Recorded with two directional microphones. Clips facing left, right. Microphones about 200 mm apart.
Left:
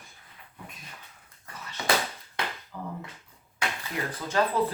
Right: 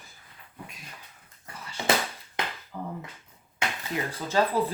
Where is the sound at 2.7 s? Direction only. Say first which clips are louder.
Right 3 dB; 10° right (ahead or behind).